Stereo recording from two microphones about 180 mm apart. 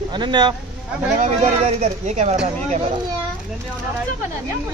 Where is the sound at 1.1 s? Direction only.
45° right (ahead or behind).